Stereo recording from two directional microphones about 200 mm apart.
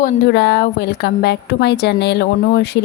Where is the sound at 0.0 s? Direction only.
55° left (ahead or behind).